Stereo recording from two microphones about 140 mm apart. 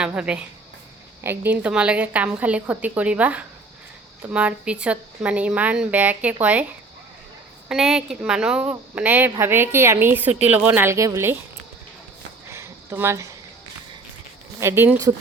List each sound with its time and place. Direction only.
0.0 s speech: 5° right (ahead or behind)
7.7 s speech: 5° right (ahead or behind); by 11.3 s 20° right (ahead or behind)
12.5 s a sound: 20° right (ahead or behind)
14.6 s speech: 15° right (ahead or behind)